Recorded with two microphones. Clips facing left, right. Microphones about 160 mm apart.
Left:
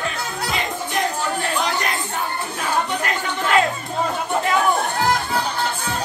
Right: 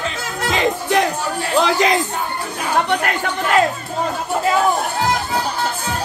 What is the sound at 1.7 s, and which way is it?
Crowd, 90° right.